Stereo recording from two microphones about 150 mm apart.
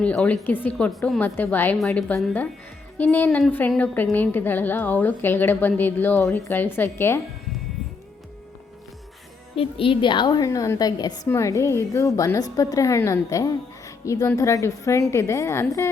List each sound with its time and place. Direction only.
0.0 s a woman's voice: 5° left (ahead or behind)
3.2 s a woman's voice: centre (ahead or behind)
9.6 s a woman's voice: 35° left (ahead or behind); by 15.9 s 20° left (ahead or behind)